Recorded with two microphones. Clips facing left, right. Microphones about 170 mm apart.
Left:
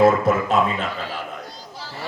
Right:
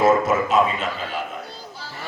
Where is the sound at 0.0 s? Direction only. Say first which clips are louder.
Left 1 dB; 60° left (ahead or behind).